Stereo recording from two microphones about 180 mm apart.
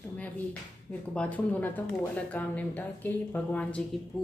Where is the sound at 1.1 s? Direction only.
5° left (ahead or behind).